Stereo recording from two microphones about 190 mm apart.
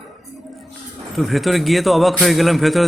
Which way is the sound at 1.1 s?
Centre (ahead or behind).